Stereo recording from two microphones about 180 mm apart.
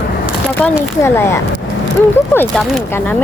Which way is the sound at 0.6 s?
15° left (ahead or behind).